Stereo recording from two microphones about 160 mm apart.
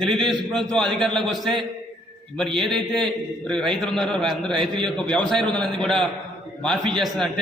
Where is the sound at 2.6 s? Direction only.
Centre (ahead or behind).